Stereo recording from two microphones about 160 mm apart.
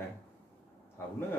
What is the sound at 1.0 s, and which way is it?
Speech, 15° left (ahead or behind).